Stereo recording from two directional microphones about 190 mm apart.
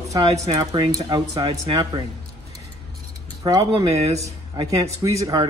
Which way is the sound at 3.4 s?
20° right (ahead or behind).